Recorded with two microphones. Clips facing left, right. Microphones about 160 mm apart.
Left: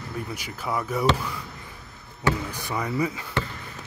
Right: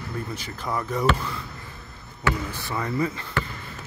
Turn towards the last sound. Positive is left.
turn(degrees=10)  # may be behind; listen again after turning